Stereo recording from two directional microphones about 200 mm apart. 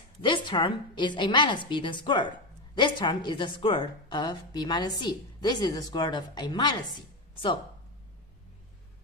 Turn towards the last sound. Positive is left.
turn(degrees=25)  # may be behind; listen again after turning